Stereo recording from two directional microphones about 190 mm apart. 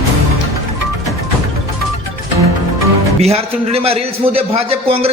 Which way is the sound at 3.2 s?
35° right (ahead or behind).